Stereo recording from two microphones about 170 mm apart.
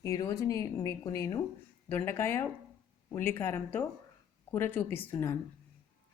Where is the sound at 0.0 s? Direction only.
20° left (ahead or behind).